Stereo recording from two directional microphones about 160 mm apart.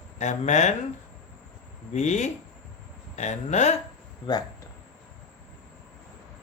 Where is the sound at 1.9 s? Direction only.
45° left (ahead or behind).